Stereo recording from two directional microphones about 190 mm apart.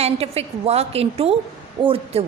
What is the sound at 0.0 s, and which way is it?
A woman's voice, 30° right (ahead or behind).